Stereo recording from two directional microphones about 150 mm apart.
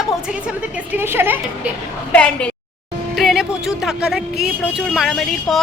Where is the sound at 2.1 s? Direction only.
5° left (ahead or behind).